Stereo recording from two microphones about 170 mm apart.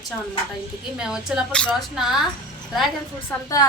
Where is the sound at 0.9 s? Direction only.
5° right (ahead or behind).